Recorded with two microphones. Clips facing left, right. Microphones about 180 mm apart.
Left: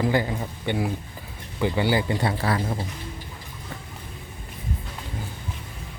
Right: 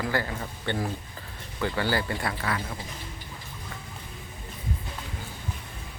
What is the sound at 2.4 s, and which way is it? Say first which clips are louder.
Speech: left 6 dB; 35° left (ahead or behind).